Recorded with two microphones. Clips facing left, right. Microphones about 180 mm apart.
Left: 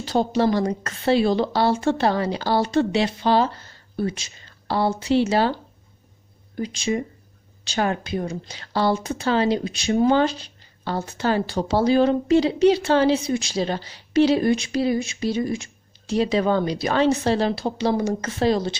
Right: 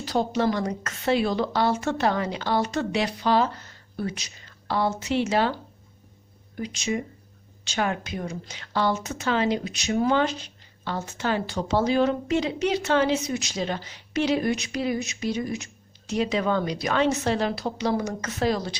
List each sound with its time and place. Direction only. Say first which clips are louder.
0.0 s speech: left 3 dB; 30° left (ahead or behind)
6.6 s speech: left 4 dB; 30° left (ahead or behind)